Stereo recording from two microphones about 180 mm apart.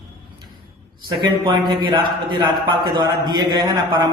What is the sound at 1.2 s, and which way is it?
Speech, 25° right (ahead or behind).